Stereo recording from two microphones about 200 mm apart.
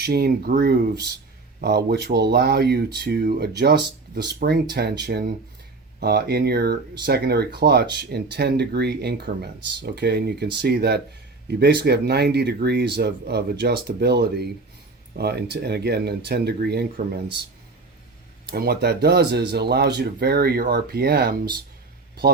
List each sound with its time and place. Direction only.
0.0 s speech: 50° right (ahead or behind)
18.5 s speech: 50° right (ahead or behind)